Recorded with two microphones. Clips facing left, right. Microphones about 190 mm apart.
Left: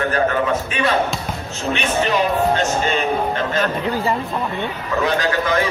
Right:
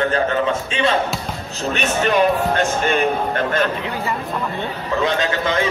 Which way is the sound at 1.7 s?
55° right (ahead or behind).